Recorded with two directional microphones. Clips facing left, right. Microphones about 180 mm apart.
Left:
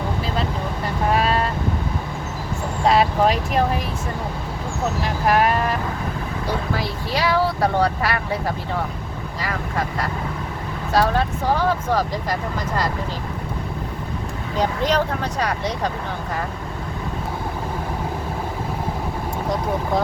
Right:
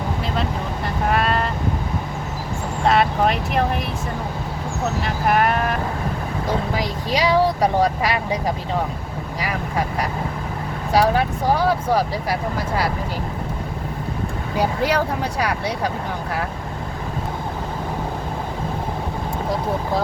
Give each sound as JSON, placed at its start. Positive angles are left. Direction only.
{"t": 1.1, "sound": "speech", "side_deg": 0}
{"t": 2.8, "sound": "speech", "side_deg": 0}
{"t": 5.0, "sound": "speech", "side_deg": 0}
{"t": 6.7, "sound": "speech", "side_deg": -15}
{"t": 14.6, "sound": "speech", "side_deg": -10}